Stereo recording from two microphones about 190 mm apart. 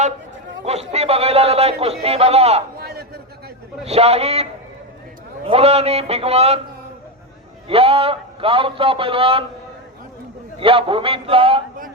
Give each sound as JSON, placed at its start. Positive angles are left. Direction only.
{"t": 0.6, "sound": "speech", "side_deg": -35}
{"t": 2.7, "sound": "a sound", "side_deg": -55}
{"t": 3.8, "sound": "speech", "side_deg": -35}
{"t": 5.5, "sound": "speech", "side_deg": -30}
{"t": 7.7, "sound": "a man's voice", "side_deg": -30}
{"t": 10.6, "sound": "a man's voice", "side_deg": -30}